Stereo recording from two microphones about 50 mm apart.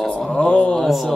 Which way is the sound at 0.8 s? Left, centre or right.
Centre.